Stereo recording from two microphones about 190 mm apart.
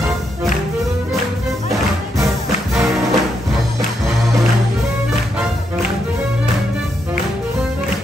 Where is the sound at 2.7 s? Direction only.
Centre (ahead or behind).